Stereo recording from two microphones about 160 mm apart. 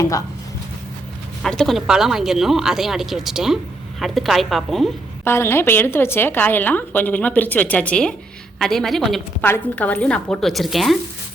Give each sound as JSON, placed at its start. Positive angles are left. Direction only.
{"t": 1.4, "sound": "speech", "side_deg": 0}
{"t": 5.2, "sound": "a woman's voice", "side_deg": 15}